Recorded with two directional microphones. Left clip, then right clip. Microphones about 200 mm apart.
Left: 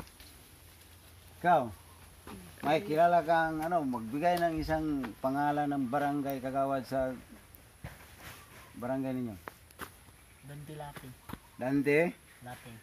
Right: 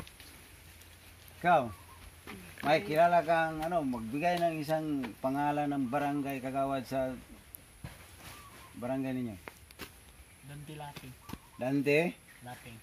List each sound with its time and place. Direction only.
1.4 s speech: 15° right (ahead or behind); by 7.2 s centre (ahead or behind)
8.7 s speech: 5° right (ahead or behind)
11.8 s speech: 40° right (ahead or behind)